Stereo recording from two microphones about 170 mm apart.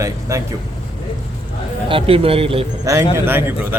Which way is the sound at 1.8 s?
30° right (ahead or behind).